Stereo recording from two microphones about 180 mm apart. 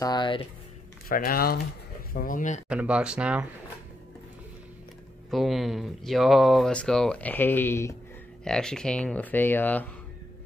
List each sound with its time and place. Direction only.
0.0 s a sound: 25° left (ahead or behind)
1.0 s speech: 55° left (ahead or behind)
2.7 s speech: 5° right (ahead or behind)
5.3 s speech: centre (ahead or behind)
8.5 s speech: 5° left (ahead or behind)